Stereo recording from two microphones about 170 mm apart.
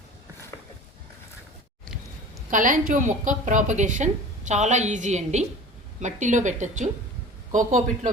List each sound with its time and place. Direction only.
2.5 s a woman's voice: 50° right (ahead or behind)